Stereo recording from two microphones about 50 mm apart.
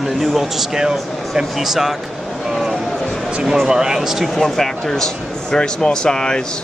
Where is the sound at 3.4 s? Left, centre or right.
Centre.